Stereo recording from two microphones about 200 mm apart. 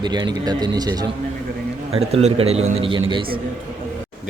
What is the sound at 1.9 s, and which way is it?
A man's voice, 30° right (ahead or behind).